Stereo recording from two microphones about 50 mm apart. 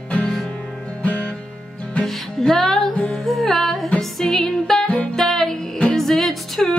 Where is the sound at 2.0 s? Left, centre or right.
Centre.